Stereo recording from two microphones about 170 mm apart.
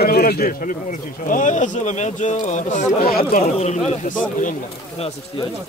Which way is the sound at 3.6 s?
40° left (ahead or behind).